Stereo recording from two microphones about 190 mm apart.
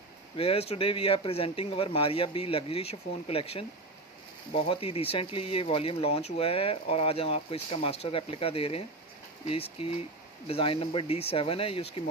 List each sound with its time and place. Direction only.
0.4 s speech: 30° left (ahead or behind)